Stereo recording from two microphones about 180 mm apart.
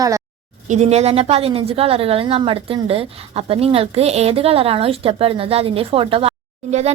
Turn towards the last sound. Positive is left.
turn(degrees=-35)  # may be behind; listen again after turning